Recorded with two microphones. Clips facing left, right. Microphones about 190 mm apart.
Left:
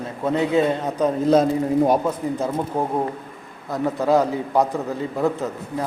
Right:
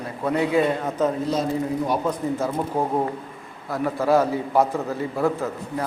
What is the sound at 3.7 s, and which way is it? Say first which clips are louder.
A man's voice: left 1 dB; 20° left (ahead or behind).